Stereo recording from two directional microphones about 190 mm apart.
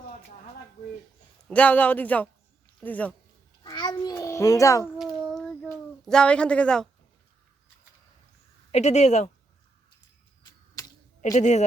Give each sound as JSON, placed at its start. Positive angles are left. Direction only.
{"t": 1.5, "sound": "speech", "side_deg": 5}
{"t": 3.6, "sound": "a sound", "side_deg": 20}
{"t": 5.3, "sound": "child singing", "side_deg": 0}
{"t": 6.1, "sound": "speech", "side_deg": 5}
{"t": 8.7, "sound": "speech", "side_deg": 35}
{"t": 11.3, "sound": "speech", "side_deg": 40}